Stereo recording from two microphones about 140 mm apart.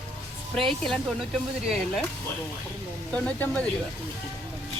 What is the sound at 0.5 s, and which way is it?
Speech, centre (ahead or behind).